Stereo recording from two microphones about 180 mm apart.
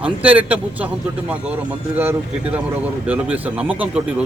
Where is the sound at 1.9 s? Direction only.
10° right (ahead or behind).